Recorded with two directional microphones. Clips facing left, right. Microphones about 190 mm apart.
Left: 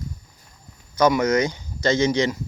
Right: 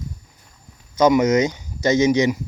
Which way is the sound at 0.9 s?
20° right (ahead or behind).